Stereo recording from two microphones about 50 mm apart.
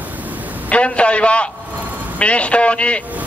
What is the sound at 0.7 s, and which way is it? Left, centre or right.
Speech, left.